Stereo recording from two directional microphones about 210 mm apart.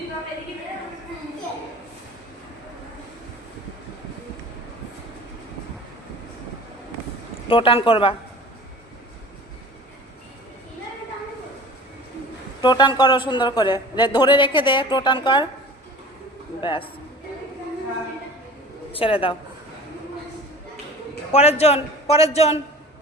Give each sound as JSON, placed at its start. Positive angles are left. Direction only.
{"t": 7.4, "sound": "a man's voice", "side_deg": 25}
{"t": 12.6, "sound": "a man's voice", "side_deg": 20}
{"t": 16.6, "sound": "a man's voice", "side_deg": 25}
{"t": 18.9, "sound": "a man's voice", "side_deg": 25}
{"t": 21.3, "sound": "a man's voice", "side_deg": 30}